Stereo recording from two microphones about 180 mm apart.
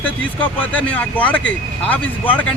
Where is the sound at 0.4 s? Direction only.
10° left (ahead or behind).